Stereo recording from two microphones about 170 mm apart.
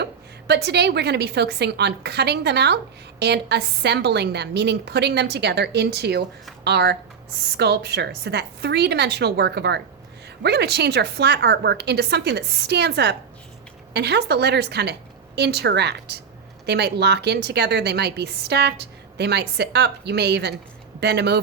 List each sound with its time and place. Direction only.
0.0 s a woman's voice: 75° right (ahead or behind)